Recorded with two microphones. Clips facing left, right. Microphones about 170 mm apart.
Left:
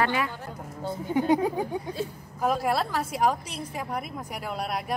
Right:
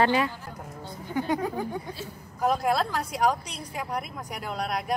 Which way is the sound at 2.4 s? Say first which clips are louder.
Right 1 dB; 5° left (ahead or behind).